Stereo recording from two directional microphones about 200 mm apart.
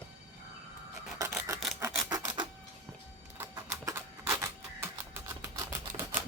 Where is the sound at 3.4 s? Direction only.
15° right (ahead or behind).